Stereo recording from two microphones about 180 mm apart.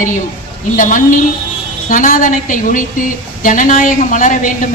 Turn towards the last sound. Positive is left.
turn(degrees=45)  # may be behind; listen again after turning